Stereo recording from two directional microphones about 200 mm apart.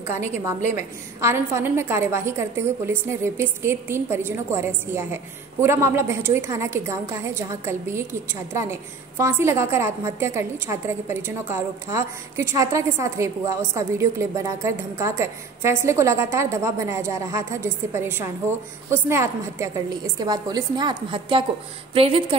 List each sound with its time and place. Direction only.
0.7 s a woman's voice: 15° right (ahead or behind)